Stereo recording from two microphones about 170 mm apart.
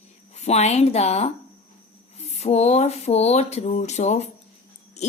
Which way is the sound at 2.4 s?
40° left (ahead or behind).